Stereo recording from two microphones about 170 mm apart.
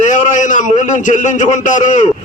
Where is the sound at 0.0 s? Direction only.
45° left (ahead or behind).